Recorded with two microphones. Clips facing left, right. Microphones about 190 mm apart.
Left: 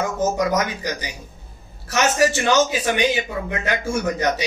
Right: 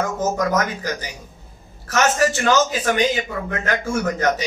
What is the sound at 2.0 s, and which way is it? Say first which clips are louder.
Speech: even; 15° left (ahead or behind).